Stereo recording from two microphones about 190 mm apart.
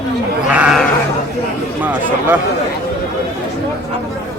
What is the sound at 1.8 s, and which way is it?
Speech, 10° right (ahead or behind).